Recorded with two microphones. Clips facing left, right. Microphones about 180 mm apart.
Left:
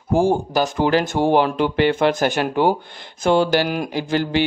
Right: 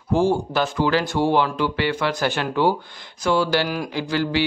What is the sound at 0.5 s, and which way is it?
Speech, 45° left (ahead or behind).